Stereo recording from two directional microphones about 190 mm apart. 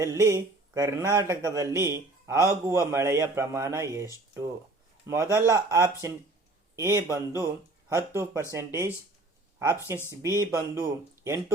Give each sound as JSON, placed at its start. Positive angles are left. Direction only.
{"t": 0.0, "sound": "speech", "side_deg": -15}
{"t": 5.0, "sound": "speech", "side_deg": -15}
{"t": 9.9, "sound": "speech", "side_deg": -15}